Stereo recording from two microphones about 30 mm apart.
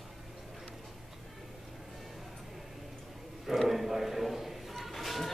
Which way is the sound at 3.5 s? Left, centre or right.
Centre.